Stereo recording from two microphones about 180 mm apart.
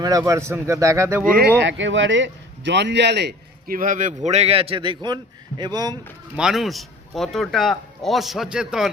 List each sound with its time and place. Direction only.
0.0 s speech: 20° right (ahead or behind)
1.4 s a man's voice: 85° right; by 6.0 s 20° right (ahead or behind)
6.3 s speech: 5° right (ahead or behind)